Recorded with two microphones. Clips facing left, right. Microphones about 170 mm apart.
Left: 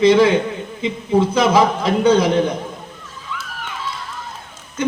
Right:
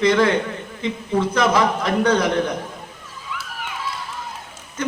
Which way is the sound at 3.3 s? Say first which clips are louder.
Left 2 dB; 10° right (ahead or behind).